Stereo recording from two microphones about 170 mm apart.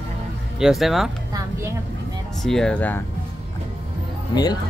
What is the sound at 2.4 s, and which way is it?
Speech, 5° left (ahead or behind).